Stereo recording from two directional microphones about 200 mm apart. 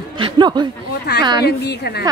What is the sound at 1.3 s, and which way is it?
Speech, 55° left (ahead or behind).